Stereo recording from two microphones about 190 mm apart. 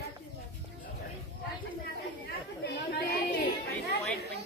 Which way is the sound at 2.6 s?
55° left (ahead or behind).